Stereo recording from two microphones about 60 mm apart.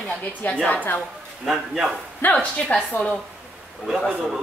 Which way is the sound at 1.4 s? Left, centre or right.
Centre.